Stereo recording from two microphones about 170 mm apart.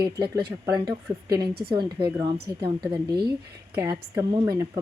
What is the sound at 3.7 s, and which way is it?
Speech, 20° right (ahead or behind).